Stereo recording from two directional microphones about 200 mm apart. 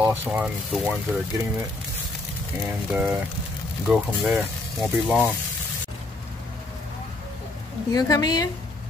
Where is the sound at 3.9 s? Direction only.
5° right (ahead or behind).